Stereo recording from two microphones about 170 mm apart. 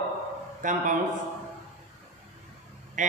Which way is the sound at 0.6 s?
50° right (ahead or behind).